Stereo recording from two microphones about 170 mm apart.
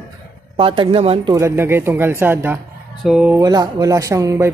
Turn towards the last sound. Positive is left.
turn(degrees=-20)  # may be behind; listen again after turning